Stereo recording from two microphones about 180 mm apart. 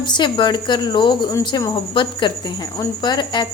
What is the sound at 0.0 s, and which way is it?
A woman's voice, 25° left (ahead or behind).